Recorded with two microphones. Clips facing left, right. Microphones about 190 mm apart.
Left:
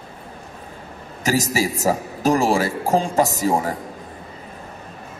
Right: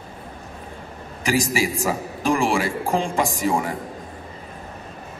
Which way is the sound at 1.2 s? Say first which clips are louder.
Left 1 dB; 40° left (ahead or behind).